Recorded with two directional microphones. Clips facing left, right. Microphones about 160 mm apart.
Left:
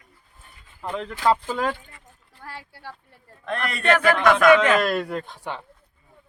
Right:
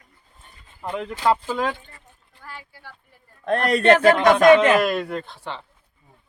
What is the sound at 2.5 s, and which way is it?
Speech, 80° left.